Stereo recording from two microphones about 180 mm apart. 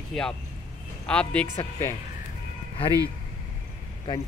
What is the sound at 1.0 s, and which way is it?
Speech, 5° left (ahead or behind).